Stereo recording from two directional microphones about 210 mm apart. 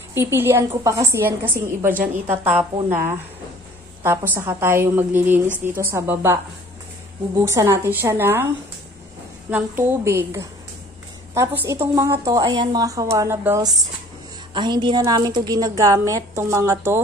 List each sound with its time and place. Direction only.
0.1 s a woman's voice: 10° right (ahead or behind)
7.4 s a woman's voice: 15° right (ahead or behind)
9.5 s a woman's voice: 10° right (ahead or behind)
14.5 s a woman's voice: 20° right (ahead or behind)